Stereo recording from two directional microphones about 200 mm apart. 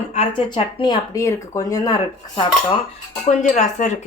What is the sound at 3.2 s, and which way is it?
Speech, 35° left (ahead or behind).